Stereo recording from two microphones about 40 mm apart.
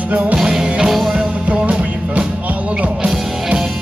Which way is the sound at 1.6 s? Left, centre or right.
Right.